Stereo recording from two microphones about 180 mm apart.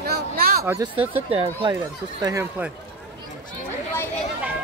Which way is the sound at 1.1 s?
30° right (ahead or behind).